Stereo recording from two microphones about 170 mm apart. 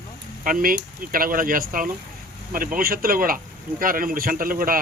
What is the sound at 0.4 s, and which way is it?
Speech, 55° right (ahead or behind).